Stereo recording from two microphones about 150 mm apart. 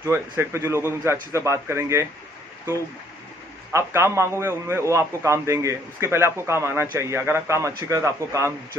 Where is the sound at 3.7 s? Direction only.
20° right (ahead or behind).